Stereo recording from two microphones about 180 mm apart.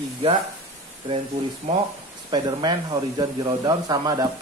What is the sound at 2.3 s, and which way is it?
Speech, 25° right (ahead or behind).